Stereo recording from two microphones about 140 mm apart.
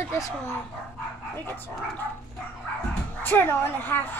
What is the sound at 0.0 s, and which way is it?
Dog, 20° left (ahead or behind).